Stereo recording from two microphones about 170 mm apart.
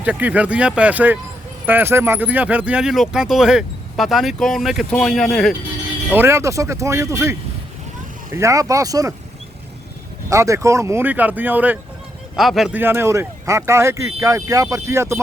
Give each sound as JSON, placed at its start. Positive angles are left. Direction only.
{"t": 0.0, "sound": "speech", "side_deg": -10}
{"t": 6.1, "sound": "speech", "side_deg": -15}
{"t": 10.2, "sound": "speech", "side_deg": -20}